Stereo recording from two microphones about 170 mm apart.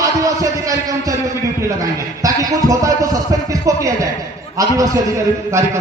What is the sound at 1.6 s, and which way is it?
A man's voice, 20° right (ahead or behind).